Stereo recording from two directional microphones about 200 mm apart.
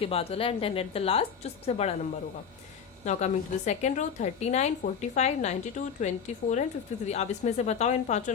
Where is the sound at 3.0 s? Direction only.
35° left (ahead or behind).